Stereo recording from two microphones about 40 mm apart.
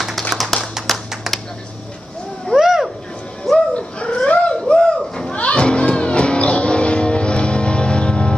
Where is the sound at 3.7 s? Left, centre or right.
Left.